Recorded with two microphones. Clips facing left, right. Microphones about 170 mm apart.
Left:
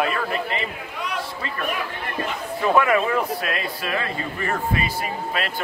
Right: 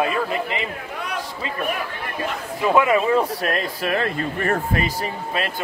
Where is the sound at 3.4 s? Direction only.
45° right (ahead or behind).